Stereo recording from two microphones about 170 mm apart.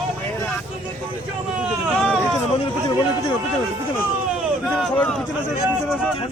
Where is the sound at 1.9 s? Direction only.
Centre (ahead or behind).